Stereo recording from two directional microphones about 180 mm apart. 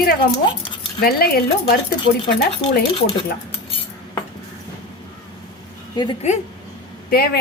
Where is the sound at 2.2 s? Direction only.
30° left (ahead or behind).